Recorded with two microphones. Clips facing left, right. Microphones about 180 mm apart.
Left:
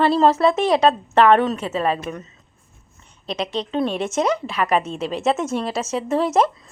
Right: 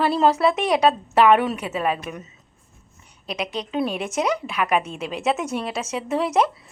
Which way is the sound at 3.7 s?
5° right (ahead or behind).